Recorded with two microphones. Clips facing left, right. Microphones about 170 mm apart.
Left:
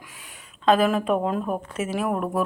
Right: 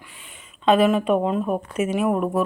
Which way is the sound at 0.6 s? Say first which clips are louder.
Right 2 dB; centre (ahead or behind).